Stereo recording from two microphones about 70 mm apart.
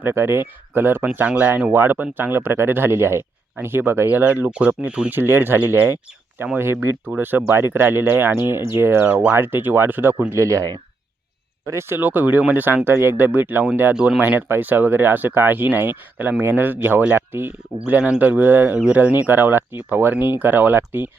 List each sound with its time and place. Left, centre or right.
0.0 s speech: right
1.2 s speech: centre; by 9.0 s right
9.0 s speech: centre
9.3 s speech: right
11.6 s speech: right
17.9 s speech: centre